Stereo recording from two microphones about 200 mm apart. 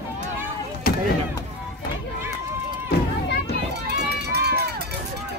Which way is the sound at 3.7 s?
55° right (ahead or behind).